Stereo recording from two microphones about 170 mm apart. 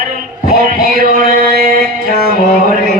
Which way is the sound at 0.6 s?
55° right (ahead or behind).